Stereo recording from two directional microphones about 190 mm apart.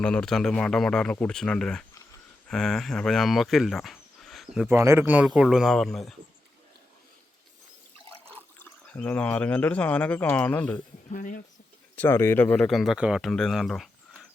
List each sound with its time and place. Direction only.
0.0 s speech: 5° left (ahead or behind)
4.7 s speech: 15° right (ahead or behind); by 6.1 s centre (ahead or behind)
8.9 s speech: 5° left (ahead or behind)
11.1 s speech: 45° left (ahead or behind)
11.9 s speech: 10° left (ahead or behind)